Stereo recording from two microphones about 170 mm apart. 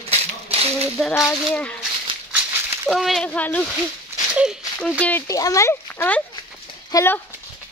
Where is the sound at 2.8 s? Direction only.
Centre (ahead or behind).